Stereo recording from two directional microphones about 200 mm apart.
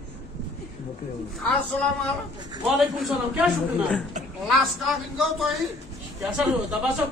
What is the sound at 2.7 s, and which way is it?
Speech, centre (ahead or behind).